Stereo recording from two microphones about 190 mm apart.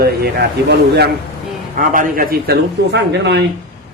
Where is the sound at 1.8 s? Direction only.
45° right (ahead or behind).